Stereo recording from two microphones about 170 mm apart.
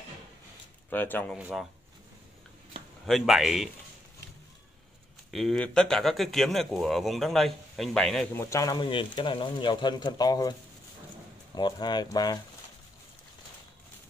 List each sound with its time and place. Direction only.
0.8 s speech: 10° left (ahead or behind)
1.3 s speech: centre (ahead or behind)
3.1 s speech: centre (ahead or behind)
5.3 s speech: centre (ahead or behind)
8.4 s speech: 20° left (ahead or behind)
11.5 s speech: 25° left (ahead or behind)